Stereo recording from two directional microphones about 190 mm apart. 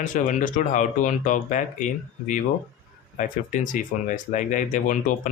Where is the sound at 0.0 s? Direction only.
45° left (ahead or behind).